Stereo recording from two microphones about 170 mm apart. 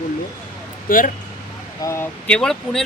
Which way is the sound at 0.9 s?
55° left (ahead or behind).